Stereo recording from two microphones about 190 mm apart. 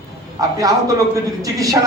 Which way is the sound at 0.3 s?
20° right (ahead or behind).